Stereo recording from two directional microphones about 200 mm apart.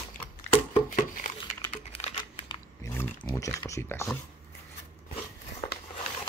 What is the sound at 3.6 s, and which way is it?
Speech, 15° left (ahead or behind).